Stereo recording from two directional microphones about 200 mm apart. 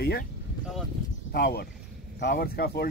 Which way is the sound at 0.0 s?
55° left (ahead or behind).